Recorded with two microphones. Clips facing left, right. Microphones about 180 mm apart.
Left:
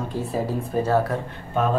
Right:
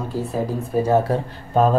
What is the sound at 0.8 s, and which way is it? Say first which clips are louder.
Speech: right 3 dB; 15° right (ahead or behind).